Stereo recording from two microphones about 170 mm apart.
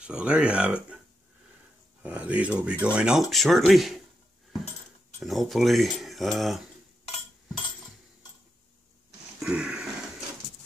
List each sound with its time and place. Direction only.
0.0 s speech: 5° right (ahead or behind)
2.0 s speech: 10° right (ahead or behind)
5.2 s speech: centre (ahead or behind)
9.4 s grunt: 5° right (ahead or behind)